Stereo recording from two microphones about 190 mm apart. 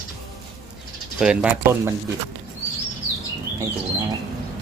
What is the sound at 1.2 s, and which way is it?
Speech, 5° right (ahead or behind).